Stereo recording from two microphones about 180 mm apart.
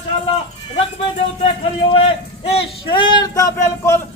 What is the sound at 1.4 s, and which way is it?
A man's voice, 30° left (ahead or behind).